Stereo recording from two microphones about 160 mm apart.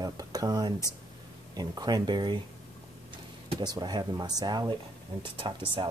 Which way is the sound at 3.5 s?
25° right (ahead or behind).